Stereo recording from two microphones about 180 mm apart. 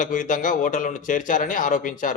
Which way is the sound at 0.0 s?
45° left (ahead or behind).